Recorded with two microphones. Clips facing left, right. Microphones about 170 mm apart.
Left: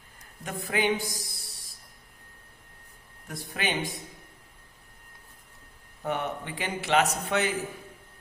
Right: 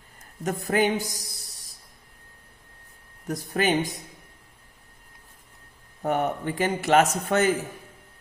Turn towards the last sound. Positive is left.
turn(degrees=-45)  # may be behind; listen again after turning